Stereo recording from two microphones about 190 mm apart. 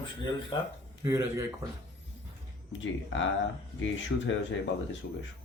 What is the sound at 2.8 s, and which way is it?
Speech, 80° left.